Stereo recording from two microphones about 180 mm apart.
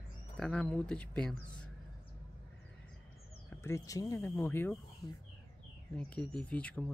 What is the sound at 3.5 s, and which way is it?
Speech, 15° left (ahead or behind).